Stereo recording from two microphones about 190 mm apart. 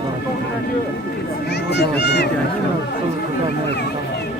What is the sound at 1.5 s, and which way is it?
Speech, 60° left (ahead or behind).